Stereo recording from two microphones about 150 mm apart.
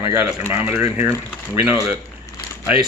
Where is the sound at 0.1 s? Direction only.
20° right (ahead or behind).